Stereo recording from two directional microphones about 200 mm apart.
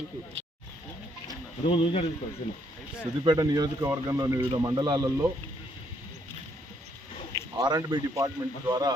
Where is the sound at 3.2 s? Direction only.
20° right (ahead or behind).